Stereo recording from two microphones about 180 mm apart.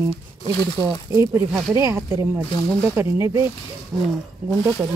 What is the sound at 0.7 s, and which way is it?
Speech, 20° right (ahead or behind).